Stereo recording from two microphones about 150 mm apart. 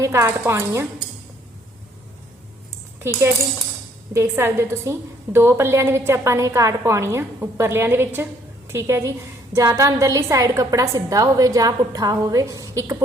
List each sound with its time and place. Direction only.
0.0 s a woman's voice: 20° right (ahead or behind)
4.1 s a woman's voice: 15° right (ahead or behind)